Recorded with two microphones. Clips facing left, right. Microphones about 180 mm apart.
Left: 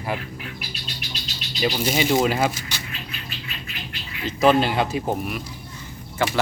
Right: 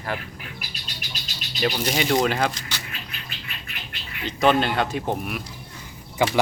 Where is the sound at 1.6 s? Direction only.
5° left (ahead or behind).